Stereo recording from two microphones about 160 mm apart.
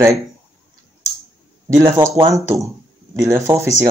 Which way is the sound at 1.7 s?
20° right (ahead or behind).